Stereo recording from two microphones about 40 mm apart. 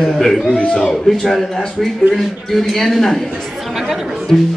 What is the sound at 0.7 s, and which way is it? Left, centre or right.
Speech, left.